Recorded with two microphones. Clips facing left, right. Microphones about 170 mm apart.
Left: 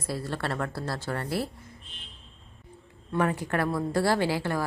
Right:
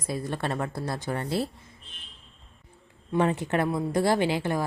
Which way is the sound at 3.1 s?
20° right (ahead or behind).